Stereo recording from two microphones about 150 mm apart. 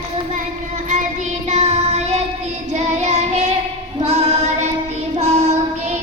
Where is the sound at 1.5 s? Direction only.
45° right (ahead or behind).